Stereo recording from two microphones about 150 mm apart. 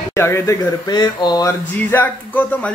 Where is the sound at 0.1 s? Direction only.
20° left (ahead or behind).